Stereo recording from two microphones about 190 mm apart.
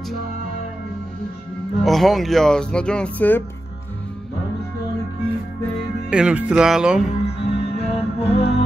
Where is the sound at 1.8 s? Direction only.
Centre (ahead or behind).